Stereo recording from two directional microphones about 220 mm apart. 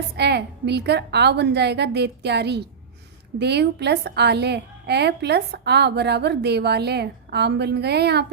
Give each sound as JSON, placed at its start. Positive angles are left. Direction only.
{"t": 0.2, "sound": "a woman's voice", "side_deg": -50}